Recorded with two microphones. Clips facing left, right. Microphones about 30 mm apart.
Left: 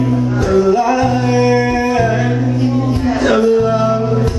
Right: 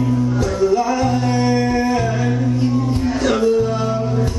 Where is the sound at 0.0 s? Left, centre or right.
Left.